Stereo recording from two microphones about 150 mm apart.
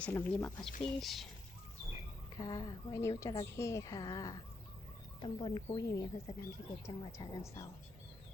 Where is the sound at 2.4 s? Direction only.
25° left (ahead or behind).